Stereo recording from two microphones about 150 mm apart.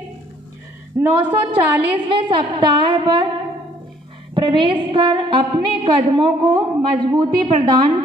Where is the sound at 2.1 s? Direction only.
30° right (ahead or behind).